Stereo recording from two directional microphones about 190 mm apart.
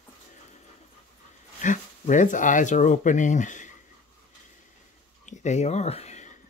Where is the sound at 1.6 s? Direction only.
40° left (ahead or behind).